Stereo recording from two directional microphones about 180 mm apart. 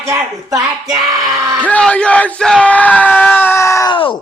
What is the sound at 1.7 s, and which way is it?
Speech, 5° left (ahead or behind).